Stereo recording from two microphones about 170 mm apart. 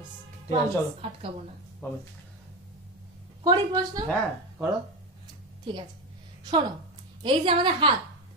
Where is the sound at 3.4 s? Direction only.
25° right (ahead or behind).